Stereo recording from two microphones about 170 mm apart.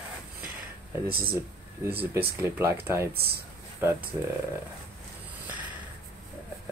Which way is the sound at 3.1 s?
65° right (ahead or behind).